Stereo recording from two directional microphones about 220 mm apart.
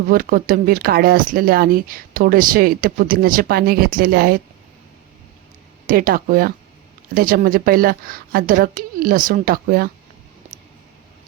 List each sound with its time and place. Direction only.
0.1 s speech: 40° right (ahead or behind)
5.9 s speech: 40° right (ahead or behind)